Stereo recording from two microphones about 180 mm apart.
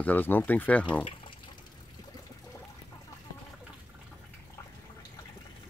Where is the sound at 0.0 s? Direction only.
10° left (ahead or behind).